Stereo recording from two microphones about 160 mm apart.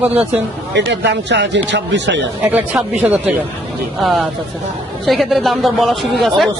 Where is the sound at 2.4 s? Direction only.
10° right (ahead or behind).